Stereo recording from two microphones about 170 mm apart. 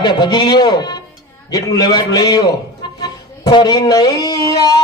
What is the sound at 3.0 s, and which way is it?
Music, 25° left (ahead or behind).